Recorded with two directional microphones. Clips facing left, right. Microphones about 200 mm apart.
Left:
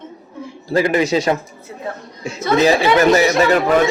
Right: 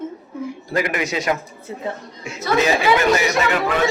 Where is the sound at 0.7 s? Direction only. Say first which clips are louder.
Left 7 dB; 30° left (ahead or behind).